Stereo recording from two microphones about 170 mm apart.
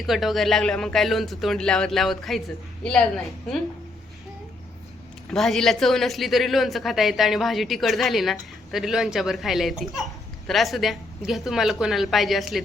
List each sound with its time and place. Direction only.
0.0 s speech: centre (ahead or behind)
5.3 s speech: centre (ahead or behind)